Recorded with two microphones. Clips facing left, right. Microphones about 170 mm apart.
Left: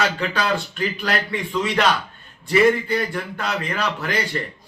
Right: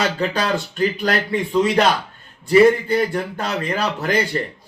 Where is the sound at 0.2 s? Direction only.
40° right (ahead or behind).